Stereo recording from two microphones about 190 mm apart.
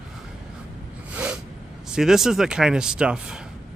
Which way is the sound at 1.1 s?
5° right (ahead or behind).